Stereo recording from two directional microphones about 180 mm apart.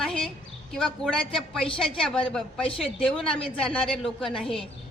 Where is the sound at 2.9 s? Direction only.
30° left (ahead or behind).